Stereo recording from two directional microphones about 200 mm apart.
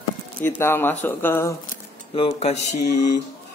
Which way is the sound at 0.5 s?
10° left (ahead or behind).